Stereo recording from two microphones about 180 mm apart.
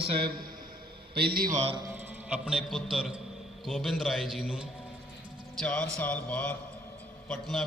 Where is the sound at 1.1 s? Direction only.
60° right (ahead or behind).